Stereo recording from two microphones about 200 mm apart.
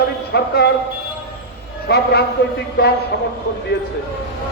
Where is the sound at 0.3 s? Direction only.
55° left (ahead or behind).